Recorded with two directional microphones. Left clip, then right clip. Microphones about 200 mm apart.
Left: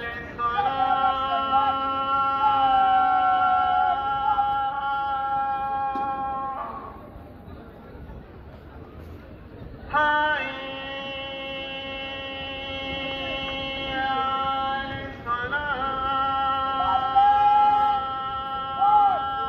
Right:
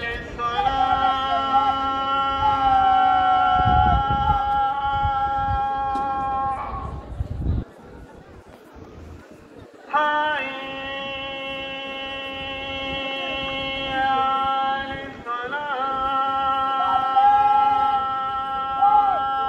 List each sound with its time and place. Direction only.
0.0 s music: 25° left (ahead or behind)
9.8 s music: 20° left (ahead or behind)
17.9 s a sound: 15° left (ahead or behind)